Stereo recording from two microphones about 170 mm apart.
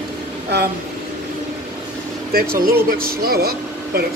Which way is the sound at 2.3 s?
60° right (ahead or behind).